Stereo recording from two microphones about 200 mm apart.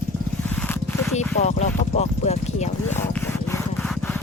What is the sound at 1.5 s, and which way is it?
Speech, 35° left (ahead or behind).